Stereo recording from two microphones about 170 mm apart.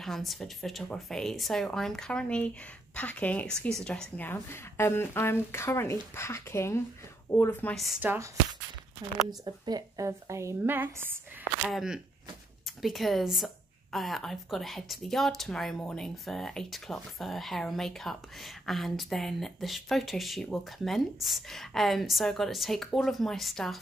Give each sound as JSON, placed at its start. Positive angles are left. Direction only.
{"t": 0.0, "sound": "speech", "side_deg": 0}
{"t": 7.7, "sound": "speech", "side_deg": 0}
{"t": 8.0, "sound": "speech", "side_deg": -10}
{"t": 9.4, "sound": "speech", "side_deg": -20}